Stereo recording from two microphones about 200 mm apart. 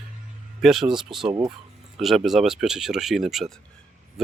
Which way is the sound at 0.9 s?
25° right (ahead or behind).